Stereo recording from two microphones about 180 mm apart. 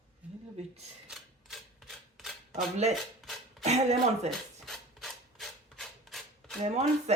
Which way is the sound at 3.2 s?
Centre (ahead or behind).